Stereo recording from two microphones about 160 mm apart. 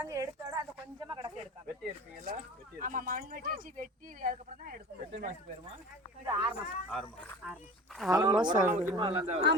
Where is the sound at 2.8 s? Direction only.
60° right (ahead or behind).